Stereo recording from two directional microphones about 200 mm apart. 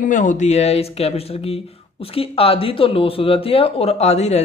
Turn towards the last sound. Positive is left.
turn(degrees=35)  # may be behind; listen again after turning